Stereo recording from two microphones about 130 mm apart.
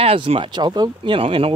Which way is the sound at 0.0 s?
45° right (ahead or behind).